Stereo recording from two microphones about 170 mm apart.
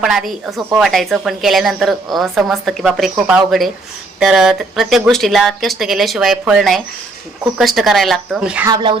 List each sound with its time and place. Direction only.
0.0 s a woman's voice: centre (ahead or behind)
8.6 s speech: 25° right (ahead or behind)